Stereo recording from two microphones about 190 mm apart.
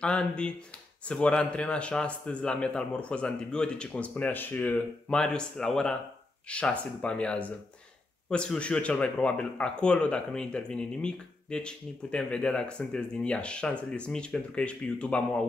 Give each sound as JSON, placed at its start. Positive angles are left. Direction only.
{"t": 0.0, "sound": "speech", "side_deg": 5}